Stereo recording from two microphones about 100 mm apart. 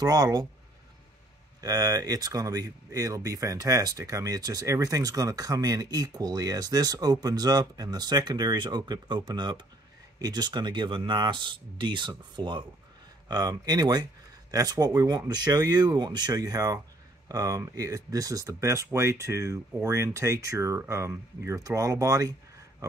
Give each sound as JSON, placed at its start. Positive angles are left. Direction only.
{"t": 0.0, "sound": "speech", "side_deg": -40}
{"t": 1.6, "sound": "speech", "side_deg": -40}
{"t": 13.3, "sound": "speech", "side_deg": -40}